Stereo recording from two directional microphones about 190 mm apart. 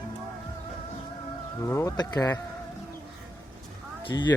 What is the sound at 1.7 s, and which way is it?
Speech, 15° left (ahead or behind).